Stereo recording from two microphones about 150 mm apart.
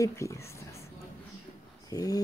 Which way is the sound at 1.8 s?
25° left (ahead or behind).